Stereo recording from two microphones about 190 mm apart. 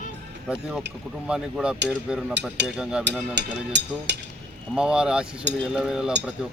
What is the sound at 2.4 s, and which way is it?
Speech, 65° right (ahead or behind).